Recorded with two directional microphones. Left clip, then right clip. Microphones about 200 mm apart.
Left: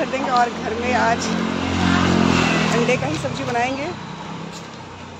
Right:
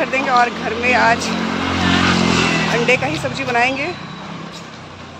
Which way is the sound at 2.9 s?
10° right (ahead or behind).